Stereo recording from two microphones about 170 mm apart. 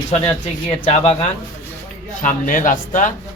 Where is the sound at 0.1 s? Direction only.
40° left (ahead or behind).